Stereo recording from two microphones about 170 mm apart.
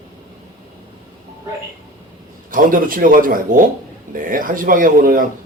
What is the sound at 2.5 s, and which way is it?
A man's voice, 55° right (ahead or behind).